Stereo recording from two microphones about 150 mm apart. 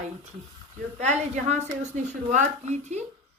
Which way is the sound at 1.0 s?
50° right (ahead or behind).